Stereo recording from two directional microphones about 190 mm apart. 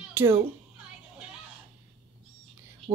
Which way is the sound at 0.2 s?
10° right (ahead or behind).